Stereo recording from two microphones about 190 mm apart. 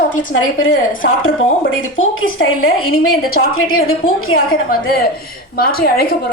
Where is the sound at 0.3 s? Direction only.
90° left.